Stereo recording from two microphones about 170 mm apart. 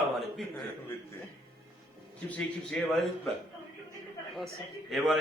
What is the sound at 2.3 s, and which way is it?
Speech, 5° left (ahead or behind).